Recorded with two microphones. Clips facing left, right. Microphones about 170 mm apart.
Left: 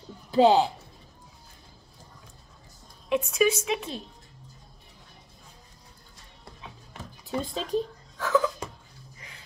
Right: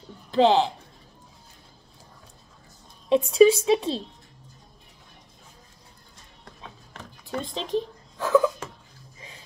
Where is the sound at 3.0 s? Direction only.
30° right (ahead or behind).